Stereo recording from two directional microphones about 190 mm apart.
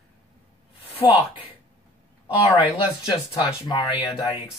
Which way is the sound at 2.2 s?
5° right (ahead or behind).